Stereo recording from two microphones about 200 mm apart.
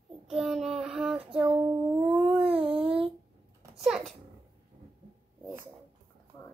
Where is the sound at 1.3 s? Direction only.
10° right (ahead or behind).